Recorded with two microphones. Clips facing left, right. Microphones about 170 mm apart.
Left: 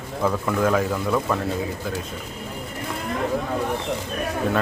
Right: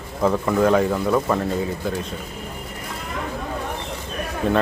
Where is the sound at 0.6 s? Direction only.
Centre (ahead or behind).